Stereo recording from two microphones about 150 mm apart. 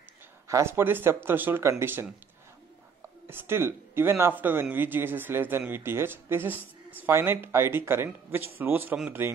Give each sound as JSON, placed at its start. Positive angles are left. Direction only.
{"t": 0.5, "sound": "speech", "side_deg": -20}
{"t": 3.3, "sound": "speech", "side_deg": -15}